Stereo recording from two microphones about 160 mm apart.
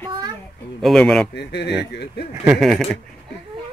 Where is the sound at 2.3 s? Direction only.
10° right (ahead or behind).